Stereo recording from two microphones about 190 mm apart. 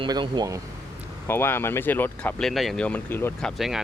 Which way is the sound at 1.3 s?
10° left (ahead or behind).